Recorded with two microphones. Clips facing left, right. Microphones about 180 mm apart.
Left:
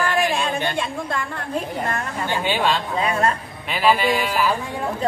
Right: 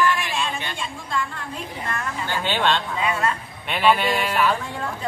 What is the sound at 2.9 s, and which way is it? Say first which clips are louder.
Speech: left 3 dB; 40° left (ahead or behind).